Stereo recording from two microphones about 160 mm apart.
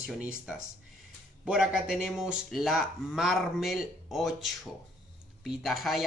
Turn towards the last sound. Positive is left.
turn(degrees=0)  # may be behind; listen again after turning